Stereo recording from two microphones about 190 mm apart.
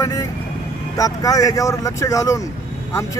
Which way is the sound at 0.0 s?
15° left (ahead or behind).